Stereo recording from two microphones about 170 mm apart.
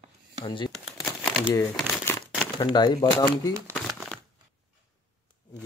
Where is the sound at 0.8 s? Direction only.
Centre (ahead or behind).